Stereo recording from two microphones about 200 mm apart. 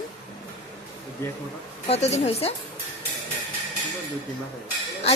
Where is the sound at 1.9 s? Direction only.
35° left (ahead or behind).